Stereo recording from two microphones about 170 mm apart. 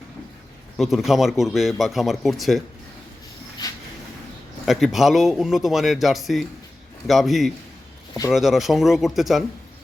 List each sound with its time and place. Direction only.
0.8 s speech: centre (ahead or behind)
3.6 s a sound: 20° left (ahead or behind)
4.6 s speech: centre (ahead or behind)